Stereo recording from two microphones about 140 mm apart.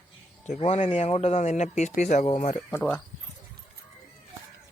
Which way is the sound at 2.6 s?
15° left (ahead or behind).